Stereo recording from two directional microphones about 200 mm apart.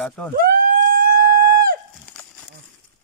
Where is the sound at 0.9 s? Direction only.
50° right (ahead or behind).